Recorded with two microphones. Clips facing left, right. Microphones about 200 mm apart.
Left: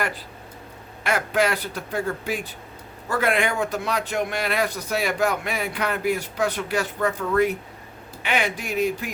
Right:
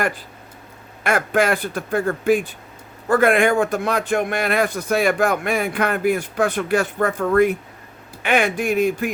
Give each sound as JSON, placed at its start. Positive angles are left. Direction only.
{"t": 1.0, "sound": "speech", "side_deg": -50}